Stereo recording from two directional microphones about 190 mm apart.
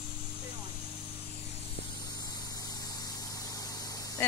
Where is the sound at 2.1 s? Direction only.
20° left (ahead or behind).